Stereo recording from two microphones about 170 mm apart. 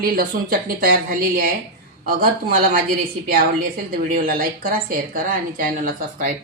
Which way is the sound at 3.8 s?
55° right (ahead or behind).